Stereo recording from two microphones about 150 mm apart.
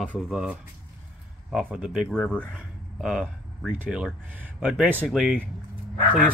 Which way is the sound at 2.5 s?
5° right (ahead or behind).